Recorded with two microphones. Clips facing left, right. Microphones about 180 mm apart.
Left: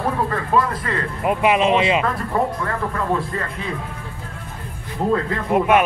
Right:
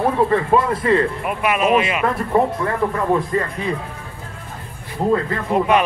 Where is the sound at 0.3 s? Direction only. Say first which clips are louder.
Right 4 dB; 25° right (ahead or behind).